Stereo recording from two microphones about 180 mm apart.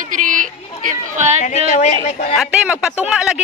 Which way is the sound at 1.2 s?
40° right (ahead or behind).